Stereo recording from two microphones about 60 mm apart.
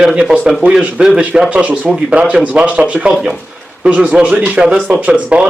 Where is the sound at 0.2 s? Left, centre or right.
Centre.